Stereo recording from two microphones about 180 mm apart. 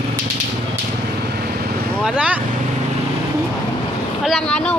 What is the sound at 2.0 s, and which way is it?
Speech, 5° right (ahead or behind).